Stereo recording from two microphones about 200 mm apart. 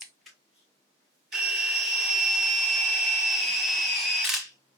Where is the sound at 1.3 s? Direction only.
Centre (ahead or behind).